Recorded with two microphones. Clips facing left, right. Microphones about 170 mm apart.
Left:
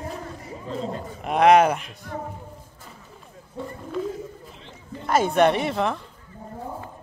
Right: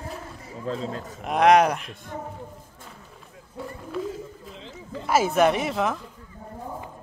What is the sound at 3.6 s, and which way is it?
Speech, centre (ahead or behind).